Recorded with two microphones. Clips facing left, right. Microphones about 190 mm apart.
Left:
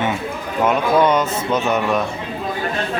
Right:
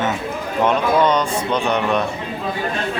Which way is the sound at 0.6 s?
5° left (ahead or behind).